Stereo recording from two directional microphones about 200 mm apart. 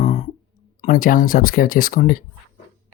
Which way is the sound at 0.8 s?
45° left (ahead or behind).